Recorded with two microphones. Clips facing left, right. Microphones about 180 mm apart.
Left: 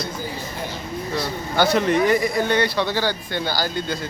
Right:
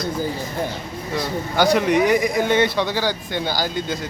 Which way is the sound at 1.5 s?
10° right (ahead or behind).